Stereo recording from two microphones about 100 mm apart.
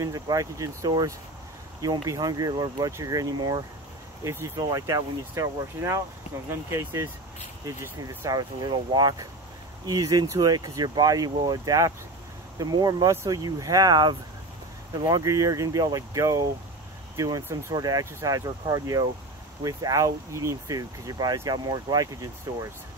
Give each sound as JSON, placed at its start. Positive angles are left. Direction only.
{"t": 0.0, "sound": "speech", "side_deg": -35}
{"t": 4.2, "sound": "speech", "side_deg": -30}
{"t": 8.3, "sound": "speech", "side_deg": -40}
{"t": 17.7, "sound": "speech", "side_deg": -40}